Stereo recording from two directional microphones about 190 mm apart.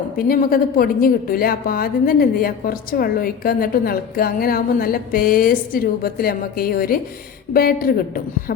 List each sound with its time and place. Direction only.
0.2 s a woman's voice: 50° left (ahead or behind)